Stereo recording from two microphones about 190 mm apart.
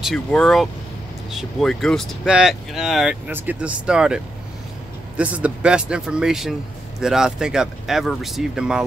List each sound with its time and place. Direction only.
0.0 s speech: 5° left (ahead or behind)